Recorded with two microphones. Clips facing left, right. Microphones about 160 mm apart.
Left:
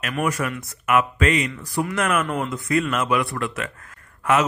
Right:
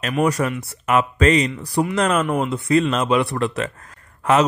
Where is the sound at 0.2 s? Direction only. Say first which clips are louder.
Right 5 dB; 35° right (ahead or behind).